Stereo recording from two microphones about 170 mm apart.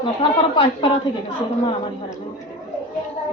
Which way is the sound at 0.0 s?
30° left (ahead or behind).